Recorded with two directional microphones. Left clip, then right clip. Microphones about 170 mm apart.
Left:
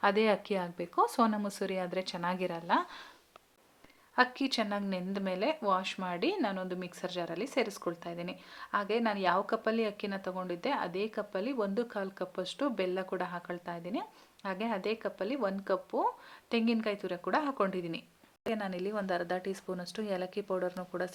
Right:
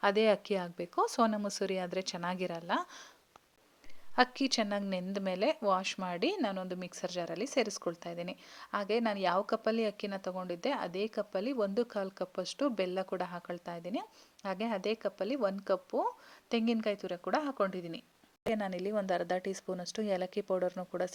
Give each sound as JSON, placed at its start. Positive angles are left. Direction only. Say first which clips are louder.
{"t": 0.0, "sound": "a woman's voice", "louder": "even", "side_deg": -40}
{"t": 4.1, "sound": "a woman's voice", "louder": "even", "side_deg": -50}
{"t": 18.4, "sound": "a woman's voice", "louder": "right 1 dB", "side_deg": -45}